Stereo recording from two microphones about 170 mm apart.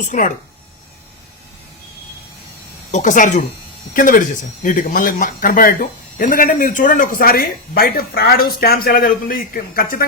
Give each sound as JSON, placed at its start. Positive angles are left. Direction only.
{"t": 0.1, "sound": "speech", "side_deg": 50}
{"t": 2.9, "sound": "a man's voice", "side_deg": 50}